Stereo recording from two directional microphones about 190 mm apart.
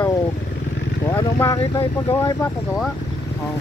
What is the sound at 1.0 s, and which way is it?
Speech, 15° left (ahead or behind).